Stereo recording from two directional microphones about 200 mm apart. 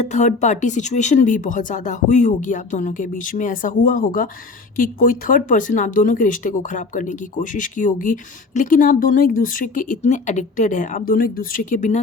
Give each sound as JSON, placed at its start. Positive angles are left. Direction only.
{"t": 0.0, "sound": "speech", "side_deg": 35}